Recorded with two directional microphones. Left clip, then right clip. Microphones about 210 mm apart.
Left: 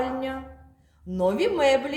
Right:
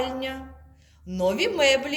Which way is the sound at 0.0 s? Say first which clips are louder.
Even; 30° left (ahead or behind).